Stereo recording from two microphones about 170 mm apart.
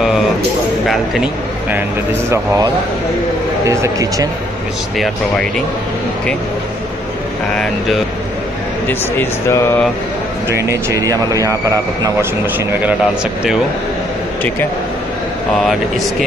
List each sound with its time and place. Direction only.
0.8 s speech: 5° right (ahead or behind)
2.2 s speech: 15° right (ahead or behind)
4.9 s speech: centre (ahead or behind)
7.5 s speech: 5° left (ahead or behind)
10.7 s speech: 20° right (ahead or behind)
15.5 s speech: centre (ahead or behind)